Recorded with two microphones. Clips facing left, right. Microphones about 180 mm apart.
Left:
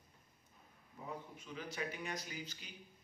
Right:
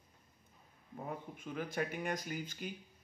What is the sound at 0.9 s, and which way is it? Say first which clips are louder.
Speech: right 4 dB; 55° right (ahead or behind).